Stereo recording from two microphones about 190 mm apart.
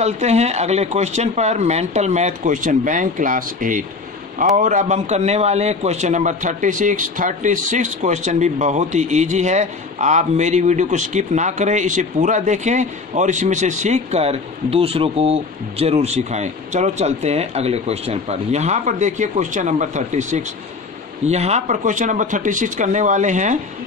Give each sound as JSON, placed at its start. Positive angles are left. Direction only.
{"t": 0.0, "sound": "a man's voice", "side_deg": -35}